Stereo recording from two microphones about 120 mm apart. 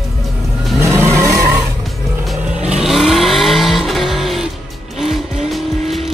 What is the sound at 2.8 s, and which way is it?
Vehicle, centre (ahead or behind).